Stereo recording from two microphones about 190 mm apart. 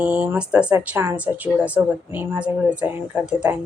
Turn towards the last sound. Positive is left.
turn(degrees=-5)  # may be behind; listen again after turning